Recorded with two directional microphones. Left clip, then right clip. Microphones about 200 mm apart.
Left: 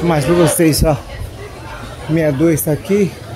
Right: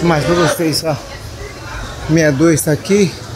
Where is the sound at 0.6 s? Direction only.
30° left (ahead or behind).